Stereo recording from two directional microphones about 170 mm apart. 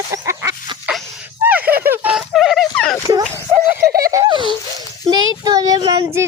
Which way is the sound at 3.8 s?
60° right (ahead or behind).